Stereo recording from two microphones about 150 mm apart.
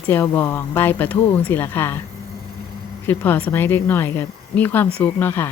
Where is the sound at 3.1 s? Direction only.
10° left (ahead or behind).